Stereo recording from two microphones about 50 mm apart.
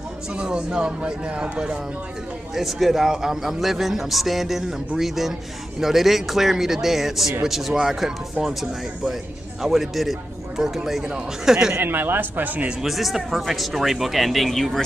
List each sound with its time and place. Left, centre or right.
0.3 s speech: centre
2.5 s a man's voice: centre
11.1 s speech: centre
11.8 s a man's voice: right
12.8 s a man's voice: centre